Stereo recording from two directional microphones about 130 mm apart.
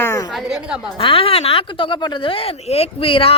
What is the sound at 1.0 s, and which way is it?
A woman's voice, 45° left (ahead or behind).